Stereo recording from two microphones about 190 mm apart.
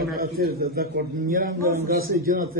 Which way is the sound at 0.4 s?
55° right (ahead or behind).